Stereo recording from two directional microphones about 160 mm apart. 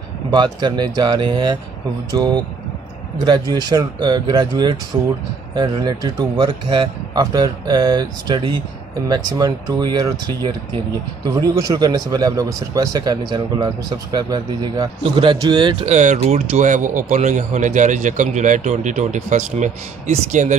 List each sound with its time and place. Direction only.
0.3 s speech: 25° right (ahead or behind)
15.9 s speech: 50° right (ahead or behind)